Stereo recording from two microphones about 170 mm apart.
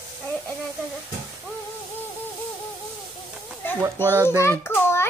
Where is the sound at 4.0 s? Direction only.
15° left (ahead or behind).